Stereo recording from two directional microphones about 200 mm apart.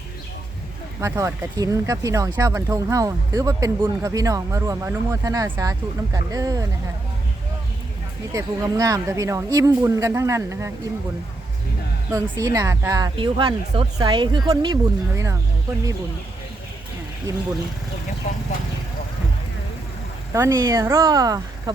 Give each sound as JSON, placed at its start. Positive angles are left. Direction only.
{"t": 1.0, "sound": "speech", "side_deg": -15}
{"t": 8.3, "sound": "speech", "side_deg": -15}
{"t": 12.1, "sound": "speech", "side_deg": -15}
{"t": 18.3, "sound": "speech", "side_deg": 35}
{"t": 20.3, "sound": "speech", "side_deg": -15}